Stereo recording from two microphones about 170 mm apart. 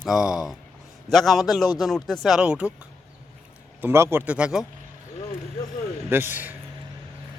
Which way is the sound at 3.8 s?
15° right (ahead or behind).